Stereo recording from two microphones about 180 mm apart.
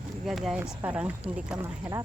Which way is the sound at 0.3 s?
Centre (ahead or behind).